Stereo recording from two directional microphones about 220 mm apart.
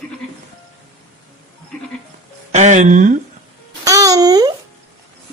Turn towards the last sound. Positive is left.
turn(degrees=-15)  # may be behind; listen again after turning